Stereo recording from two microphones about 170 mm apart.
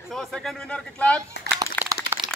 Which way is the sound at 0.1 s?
Centre (ahead or behind).